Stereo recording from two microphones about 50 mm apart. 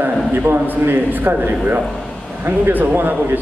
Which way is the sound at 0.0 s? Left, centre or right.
Right.